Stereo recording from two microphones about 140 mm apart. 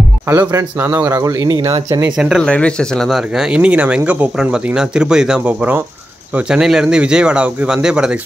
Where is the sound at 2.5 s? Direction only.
5° left (ahead or behind).